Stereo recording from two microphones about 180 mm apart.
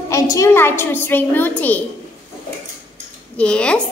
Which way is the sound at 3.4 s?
5° left (ahead or behind).